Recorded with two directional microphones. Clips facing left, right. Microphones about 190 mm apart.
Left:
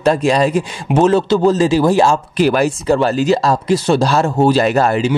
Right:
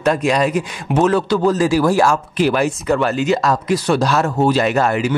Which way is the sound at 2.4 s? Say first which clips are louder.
Left 3 dB; 40° left (ahead or behind).